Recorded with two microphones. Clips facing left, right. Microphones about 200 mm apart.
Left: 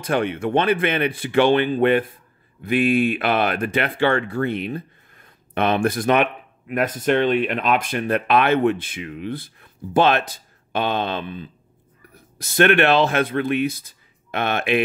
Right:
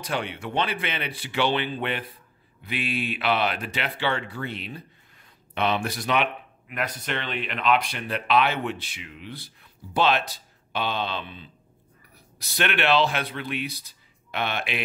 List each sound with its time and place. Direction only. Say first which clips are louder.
0.0 s speech: left 9 dB; 50° left (ahead or behind)